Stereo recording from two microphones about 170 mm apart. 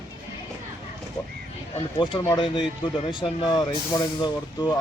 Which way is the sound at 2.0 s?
25° left (ahead or behind).